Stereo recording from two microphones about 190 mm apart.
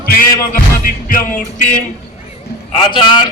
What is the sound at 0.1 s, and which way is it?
Music, 50° left (ahead or behind).